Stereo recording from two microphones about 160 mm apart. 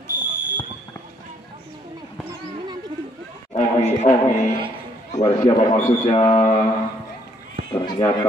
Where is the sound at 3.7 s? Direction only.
45° left (ahead or behind).